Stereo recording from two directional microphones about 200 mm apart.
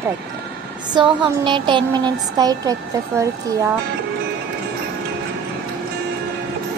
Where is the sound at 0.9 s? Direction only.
25° right (ahead or behind).